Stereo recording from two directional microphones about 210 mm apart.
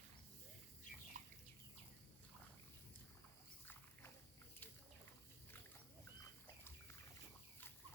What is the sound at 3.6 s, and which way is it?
Dog, 10° left (ahead or behind).